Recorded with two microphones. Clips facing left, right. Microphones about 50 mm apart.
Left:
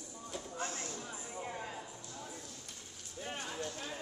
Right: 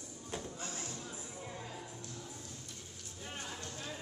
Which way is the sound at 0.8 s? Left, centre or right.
Left.